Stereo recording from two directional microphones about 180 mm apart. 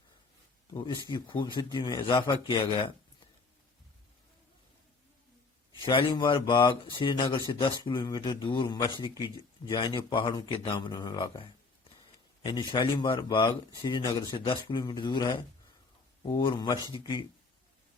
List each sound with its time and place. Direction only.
0.7 s a man's voice: 25° left (ahead or behind)
5.8 s a man's voice: 30° left (ahead or behind)